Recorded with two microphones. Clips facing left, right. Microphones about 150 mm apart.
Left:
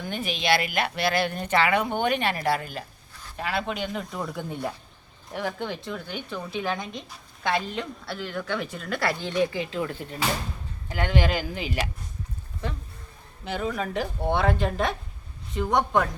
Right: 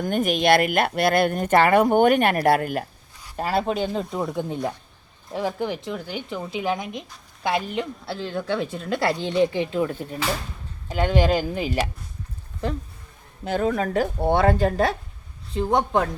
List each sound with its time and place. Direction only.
0.0 s speech: 50° right (ahead or behind)
3.3 s a woman's voice: 40° right (ahead or behind)
13.4 s speech: 45° right (ahead or behind)
15.5 s a woman's voice: 30° right (ahead or behind)